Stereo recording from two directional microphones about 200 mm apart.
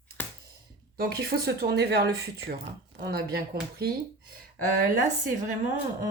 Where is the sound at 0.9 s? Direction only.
50° right (ahead or behind).